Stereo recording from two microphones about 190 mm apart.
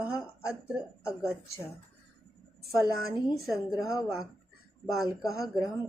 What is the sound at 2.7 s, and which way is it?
Speech, 20° left (ahead or behind).